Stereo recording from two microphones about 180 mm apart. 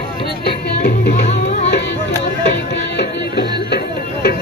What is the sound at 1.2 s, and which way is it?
Tabla, 40° left (ahead or behind).